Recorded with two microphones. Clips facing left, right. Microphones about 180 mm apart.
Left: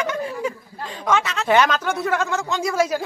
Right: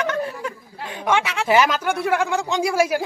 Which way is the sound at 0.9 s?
10° right (ahead or behind).